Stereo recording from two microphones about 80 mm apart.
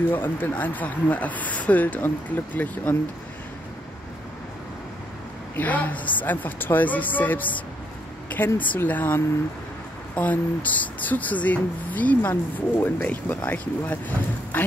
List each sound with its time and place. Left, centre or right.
0.1 s speech: left
5.6 s speech: centre